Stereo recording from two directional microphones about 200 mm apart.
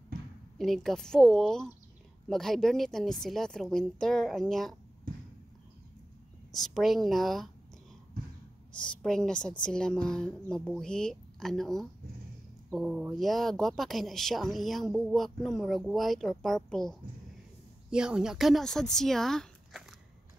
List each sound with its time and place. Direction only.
0.6 s speech: centre (ahead or behind)
6.5 s speech: centre (ahead or behind)
8.7 s speech: 5° left (ahead or behind)